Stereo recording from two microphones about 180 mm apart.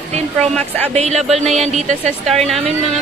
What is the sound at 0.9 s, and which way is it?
A woman's voice, 40° right (ahead or behind).